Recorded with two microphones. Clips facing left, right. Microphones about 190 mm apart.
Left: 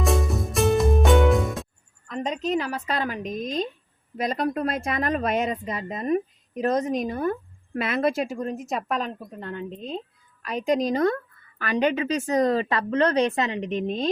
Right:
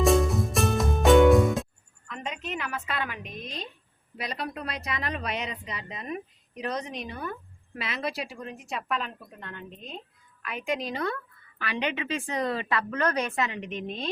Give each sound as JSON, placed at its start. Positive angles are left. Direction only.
{"t": 0.0, "sound": "music", "side_deg": 0}
{"t": 2.0, "sound": "a woman's voice", "side_deg": 40}